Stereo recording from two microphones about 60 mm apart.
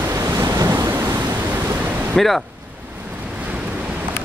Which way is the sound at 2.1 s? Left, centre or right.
Centre.